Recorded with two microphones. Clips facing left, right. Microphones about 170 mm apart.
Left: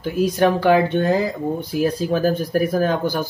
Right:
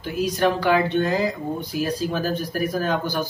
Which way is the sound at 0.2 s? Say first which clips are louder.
Left 4 dB; 50° left (ahead or behind).